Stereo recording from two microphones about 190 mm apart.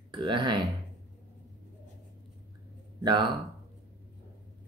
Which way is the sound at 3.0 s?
25° right (ahead or behind).